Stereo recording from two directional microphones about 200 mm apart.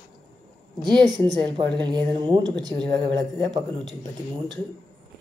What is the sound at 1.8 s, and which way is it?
A woman's voice, 20° right (ahead or behind).